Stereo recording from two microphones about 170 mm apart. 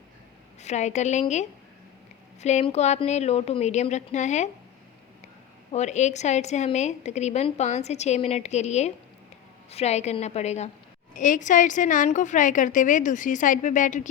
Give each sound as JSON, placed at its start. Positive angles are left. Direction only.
{"t": 0.6, "sound": "a woman's voice", "side_deg": 40}
{"t": 2.4, "sound": "a woman's voice", "side_deg": 40}
{"t": 5.7, "sound": "a woman's voice", "side_deg": 45}